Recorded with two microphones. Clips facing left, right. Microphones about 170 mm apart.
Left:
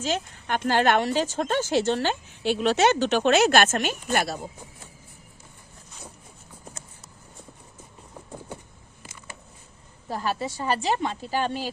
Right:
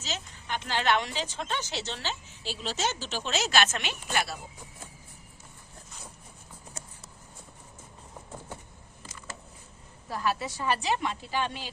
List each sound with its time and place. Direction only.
0.0 s speech: 55° left (ahead or behind)
10.1 s a woman's voice: 30° left (ahead or behind)